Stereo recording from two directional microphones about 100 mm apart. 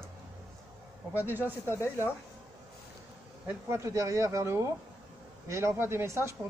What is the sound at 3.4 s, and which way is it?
Speech, 30° right (ahead or behind).